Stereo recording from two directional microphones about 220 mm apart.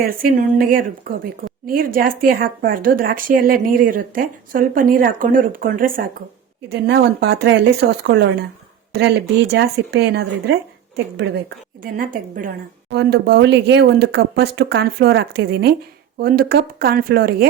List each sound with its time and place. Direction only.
0.2 s a woman's voice: 40° right (ahead or behind)
6.7 s a woman's voice: 50° right (ahead or behind)
11.8 s a woman's voice: 40° right (ahead or behind)